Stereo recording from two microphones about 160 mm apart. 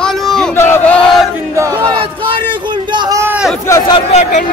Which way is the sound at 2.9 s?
20° right (ahead or behind).